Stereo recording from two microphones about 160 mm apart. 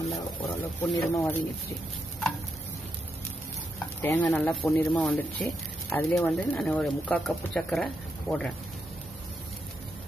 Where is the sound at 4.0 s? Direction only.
10° left (ahead or behind).